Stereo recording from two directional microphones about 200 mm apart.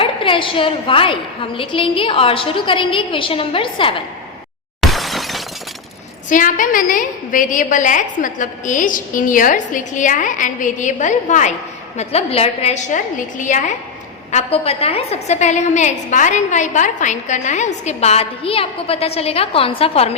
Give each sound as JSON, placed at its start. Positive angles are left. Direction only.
{"t": 0.0, "sound": "a woman's voice", "side_deg": 25}
{"t": 4.8, "sound": "shatter", "side_deg": 0}
{"t": 6.2, "sound": "a woman's voice", "side_deg": 40}